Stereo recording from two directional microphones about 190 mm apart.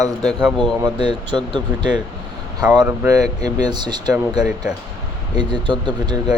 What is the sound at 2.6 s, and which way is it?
Speech, 5° right (ahead or behind).